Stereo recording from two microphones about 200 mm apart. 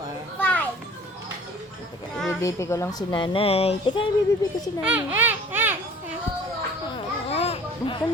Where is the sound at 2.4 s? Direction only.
15° left (ahead or behind); by 4.0 s 30° left (ahead or behind).